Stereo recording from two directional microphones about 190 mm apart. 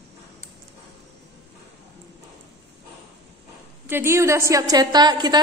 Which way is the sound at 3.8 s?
10° right (ahead or behind).